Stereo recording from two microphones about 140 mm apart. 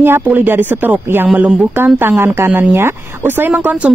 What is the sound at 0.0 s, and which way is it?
Speech, 15° right (ahead or behind).